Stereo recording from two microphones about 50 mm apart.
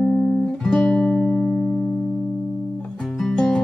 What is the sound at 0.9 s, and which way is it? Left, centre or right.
Music, left.